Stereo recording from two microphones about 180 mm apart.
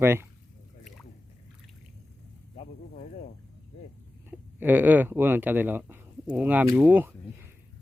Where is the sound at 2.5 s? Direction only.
45° left (ahead or behind).